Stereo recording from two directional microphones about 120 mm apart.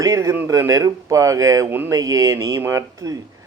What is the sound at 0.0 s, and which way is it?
A man's voice, 25° right (ahead or behind).